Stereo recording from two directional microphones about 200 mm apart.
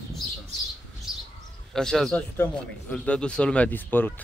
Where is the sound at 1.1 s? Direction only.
5° right (ahead or behind).